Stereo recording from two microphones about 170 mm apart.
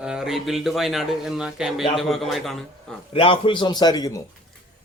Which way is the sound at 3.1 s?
30° left (ahead or behind).